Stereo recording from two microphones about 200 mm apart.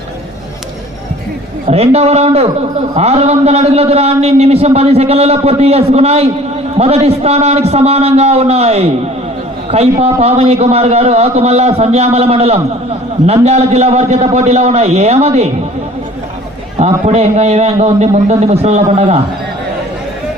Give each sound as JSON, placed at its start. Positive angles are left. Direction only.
{"t": 1.6, "sound": "a man's voice", "side_deg": -30}
{"t": 16.7, "sound": "a man's voice", "side_deg": -35}